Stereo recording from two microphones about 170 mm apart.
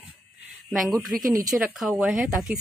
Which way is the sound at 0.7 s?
Centre (ahead or behind).